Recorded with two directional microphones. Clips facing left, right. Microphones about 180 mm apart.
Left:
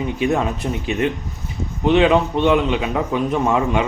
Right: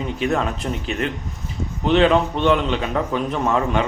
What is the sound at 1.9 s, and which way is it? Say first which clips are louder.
Speech: left 1 dB; 5° left (ahead or behind).